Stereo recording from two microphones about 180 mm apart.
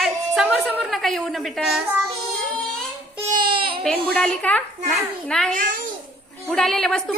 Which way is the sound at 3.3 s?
25° right (ahead or behind).